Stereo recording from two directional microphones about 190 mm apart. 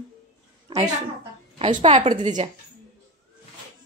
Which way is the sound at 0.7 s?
25° right (ahead or behind).